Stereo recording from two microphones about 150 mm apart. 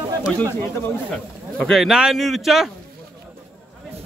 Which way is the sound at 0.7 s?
10° left (ahead or behind).